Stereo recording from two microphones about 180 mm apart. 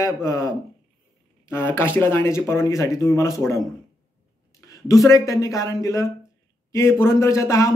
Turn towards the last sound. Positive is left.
turn(degrees=15)  # may be behind; listen again after turning